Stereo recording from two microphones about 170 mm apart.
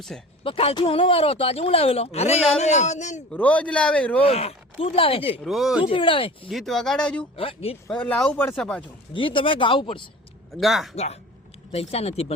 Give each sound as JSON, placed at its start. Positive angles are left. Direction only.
{"t": 0.1, "sound": "speech", "side_deg": 5}
{"t": 0.4, "sound": "speech", "side_deg": 35}
{"t": 3.3, "sound": "a man's voice", "side_deg": 10}
{"t": 4.2, "sound": "speech", "side_deg": 35}
{"t": 5.4, "sound": "speech", "side_deg": 0}
{"t": 5.8, "sound": "speech", "side_deg": 30}
{"t": 6.5, "sound": "speech", "side_deg": 0}
{"t": 7.3, "sound": "speech", "side_deg": 35}
{"t": 7.9, "sound": "a man's voice", "side_deg": 10}
{"t": 9.1, "sound": "speech", "side_deg": 30}
{"t": 10.5, "sound": "speech", "side_deg": 0}
{"t": 10.9, "sound": "speech", "side_deg": 40}